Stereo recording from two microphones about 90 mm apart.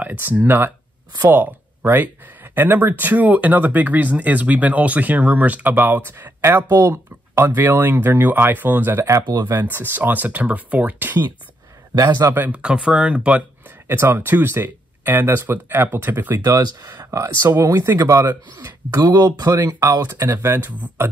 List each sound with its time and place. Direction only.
0.0 s speech: 20° right (ahead or behind)
9.2 s speech: 50° right (ahead or behind)
9.5 s speech: 25° right (ahead or behind)
11.9 s speech: 50° right (ahead or behind)
12.2 s speech: 25° right (ahead or behind)
12.5 s speech: 10° right (ahead or behind)
13.8 s speech: 25° right (ahead or behind)
16.4 s speech: 45° right (ahead or behind); by 21.1 s 25° right (ahead or behind)